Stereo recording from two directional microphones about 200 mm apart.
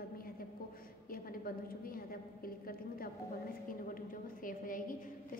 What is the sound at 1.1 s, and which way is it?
A woman's voice, 45° left (ahead or behind).